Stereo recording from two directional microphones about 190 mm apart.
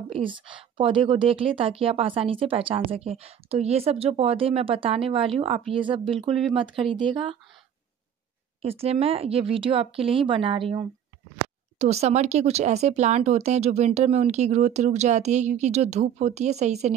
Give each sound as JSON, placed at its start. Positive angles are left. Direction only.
{"t": 0.2, "sound": "speech", "side_deg": -25}
{"t": 8.6, "sound": "speech", "side_deg": -30}